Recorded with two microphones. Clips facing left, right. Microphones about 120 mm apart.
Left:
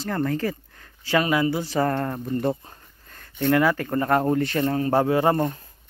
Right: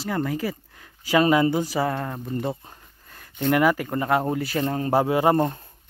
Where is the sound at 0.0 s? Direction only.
10° right (ahead or behind).